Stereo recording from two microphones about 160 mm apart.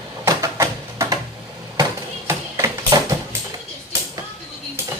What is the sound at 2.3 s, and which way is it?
Tap, 20° right (ahead or behind).